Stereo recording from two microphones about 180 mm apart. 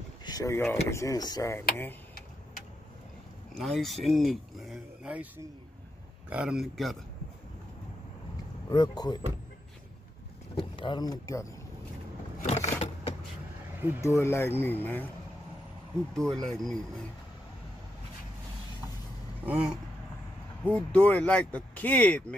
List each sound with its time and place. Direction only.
0.2 s speech: 20° left (ahead or behind)
3.5 s speech: centre (ahead or behind)
6.3 s speech: 5° right (ahead or behind)
8.6 s speech: 20° left (ahead or behind)
10.5 s speech: 30° left (ahead or behind)
12.4 s vehicle: 40° left (ahead or behind)
14.0 s speech: 15° left (ahead or behind)
16.1 s speech: 5° left (ahead or behind)
19.4 s a sound: 10° right (ahead or behind)
20.7 s speech: 5° left (ahead or behind)